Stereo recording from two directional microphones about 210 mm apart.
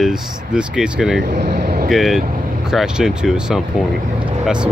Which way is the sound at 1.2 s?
55° right (ahead or behind).